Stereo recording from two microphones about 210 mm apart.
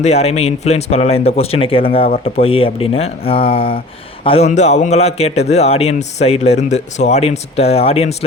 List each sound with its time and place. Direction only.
0.0 s a man's voice: 30° left (ahead or behind)